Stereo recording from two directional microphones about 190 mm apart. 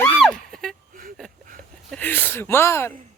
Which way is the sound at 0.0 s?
5° left (ahead or behind).